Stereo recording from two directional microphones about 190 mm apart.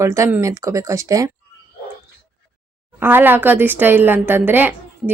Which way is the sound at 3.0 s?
10° right (ahead or behind).